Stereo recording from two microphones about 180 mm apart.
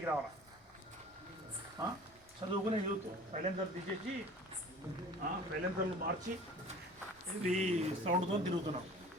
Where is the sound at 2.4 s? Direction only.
30° right (ahead or behind).